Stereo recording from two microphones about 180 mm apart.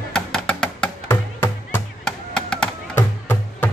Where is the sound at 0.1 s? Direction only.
5° left (ahead or behind).